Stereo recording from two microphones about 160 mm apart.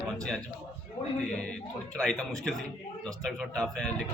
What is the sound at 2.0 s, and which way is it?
Speech, 5° left (ahead or behind).